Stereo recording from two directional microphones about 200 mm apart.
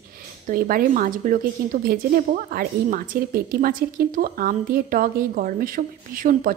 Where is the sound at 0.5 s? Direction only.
45° right (ahead or behind).